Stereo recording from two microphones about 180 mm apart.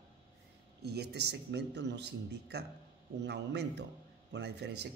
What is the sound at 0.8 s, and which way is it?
Speech, 65° right (ahead or behind).